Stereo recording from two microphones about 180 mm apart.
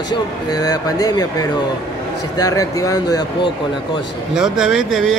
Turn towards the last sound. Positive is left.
turn(degrees=0)  # may be behind; listen again after turning